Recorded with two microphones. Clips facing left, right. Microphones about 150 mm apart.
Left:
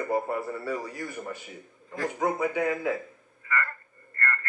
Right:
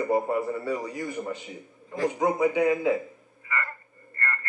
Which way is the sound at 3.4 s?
20° right (ahead or behind).